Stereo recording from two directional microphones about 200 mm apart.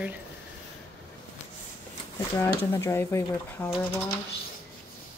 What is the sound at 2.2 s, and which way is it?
Speech, 15° left (ahead or behind).